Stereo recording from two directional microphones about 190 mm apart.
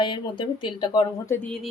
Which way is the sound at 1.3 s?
5° left (ahead or behind).